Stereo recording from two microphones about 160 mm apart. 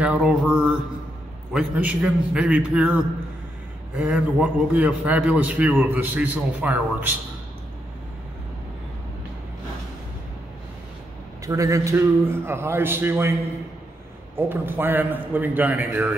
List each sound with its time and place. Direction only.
0.0 s a man's voice: 5° right (ahead or behind)
11.4 s a man's voice: 20° right (ahead or behind)